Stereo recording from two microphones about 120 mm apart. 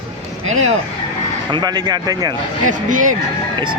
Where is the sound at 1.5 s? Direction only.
40° right (ahead or behind).